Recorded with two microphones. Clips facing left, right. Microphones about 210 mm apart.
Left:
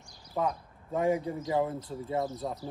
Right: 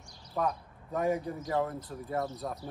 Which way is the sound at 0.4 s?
20° left (ahead or behind).